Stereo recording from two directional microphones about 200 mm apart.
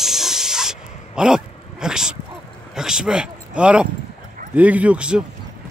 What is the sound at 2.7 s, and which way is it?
Speech, 5° right (ahead or behind).